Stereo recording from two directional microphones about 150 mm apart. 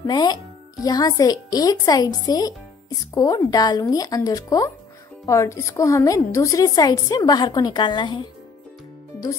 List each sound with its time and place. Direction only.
0.0 s a woman's voice: 30° left (ahead or behind)